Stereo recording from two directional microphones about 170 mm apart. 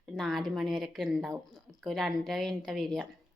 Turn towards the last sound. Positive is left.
turn(degrees=0)  # may be behind; listen again after turning